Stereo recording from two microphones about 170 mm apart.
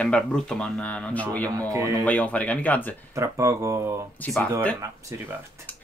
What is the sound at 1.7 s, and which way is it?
Speech, 20° right (ahead or behind).